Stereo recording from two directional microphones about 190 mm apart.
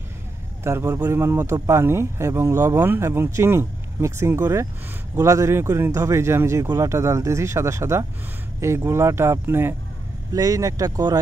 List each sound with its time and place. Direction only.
0.7 s speech: 15° right (ahead or behind)